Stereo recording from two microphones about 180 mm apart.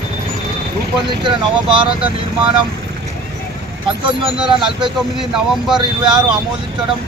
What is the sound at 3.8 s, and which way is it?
Speech, 30° right (ahead or behind).